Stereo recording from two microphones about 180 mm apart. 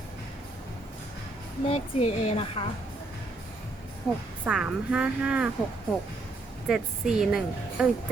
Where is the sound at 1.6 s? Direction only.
30° left (ahead or behind).